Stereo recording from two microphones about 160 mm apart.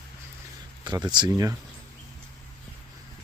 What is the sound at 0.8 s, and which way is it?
Speech, 25° right (ahead or behind).